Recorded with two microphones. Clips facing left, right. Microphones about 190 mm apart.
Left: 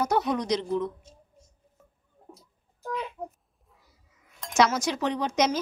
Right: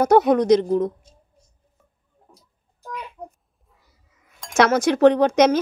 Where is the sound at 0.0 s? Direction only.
55° right (ahead or behind).